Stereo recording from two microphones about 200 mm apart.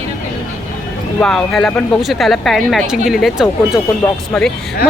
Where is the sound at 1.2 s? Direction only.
5° left (ahead or behind).